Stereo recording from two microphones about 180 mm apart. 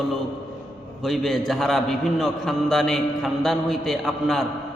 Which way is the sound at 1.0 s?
Centre (ahead or behind).